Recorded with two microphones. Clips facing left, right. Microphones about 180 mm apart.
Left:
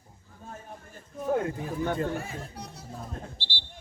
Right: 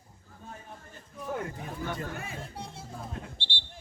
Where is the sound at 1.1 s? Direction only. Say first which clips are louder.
Left 7 dB; 50° left (ahead or behind).